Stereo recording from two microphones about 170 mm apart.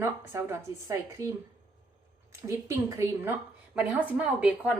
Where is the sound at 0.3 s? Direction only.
15° right (ahead or behind).